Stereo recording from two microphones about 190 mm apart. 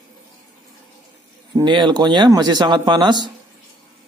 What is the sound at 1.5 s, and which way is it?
Speech, 25° right (ahead or behind).